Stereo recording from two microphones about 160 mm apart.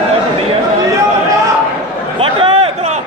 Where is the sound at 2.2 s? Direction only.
35° right (ahead or behind).